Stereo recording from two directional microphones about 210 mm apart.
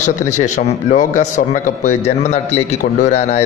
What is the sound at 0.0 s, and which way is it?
A man's voice, 35° left (ahead or behind).